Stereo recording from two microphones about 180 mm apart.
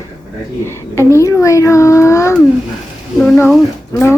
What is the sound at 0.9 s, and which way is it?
Child singing, 15° left (ahead or behind).